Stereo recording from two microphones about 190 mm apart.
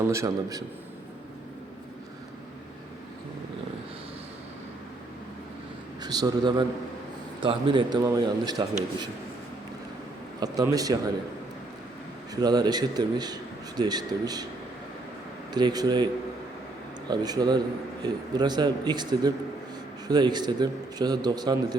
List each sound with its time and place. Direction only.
0.1 s a man's voice: 15° right (ahead or behind)
6.0 s a man's voice: 20° right (ahead or behind)
10.4 s a man's voice: 20° right (ahead or behind)
12.3 s a man's voice: 20° right (ahead or behind)
15.5 s a man's voice: 20° right (ahead or behind)
17.1 s a man's voice: 20° right (ahead or behind)